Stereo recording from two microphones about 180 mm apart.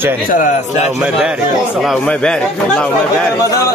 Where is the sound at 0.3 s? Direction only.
50° left (ahead or behind).